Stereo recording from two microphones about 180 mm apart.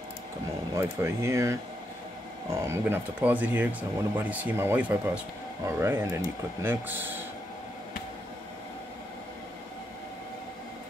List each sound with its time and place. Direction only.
0.7 s speech: 15° right (ahead or behind)